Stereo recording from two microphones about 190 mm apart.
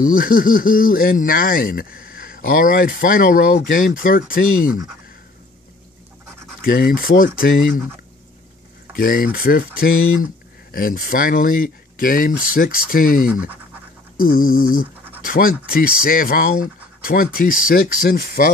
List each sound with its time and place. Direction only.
0.0 s speech: 50° left (ahead or behind)
6.6 s speech: 50° left (ahead or behind)
8.9 s speech: 50° left (ahead or behind)